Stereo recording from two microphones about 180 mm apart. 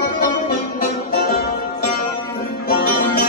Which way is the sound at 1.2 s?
55° left (ahead or behind).